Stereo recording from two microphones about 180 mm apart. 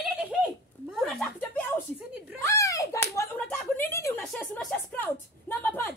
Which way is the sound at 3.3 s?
10° left (ahead or behind).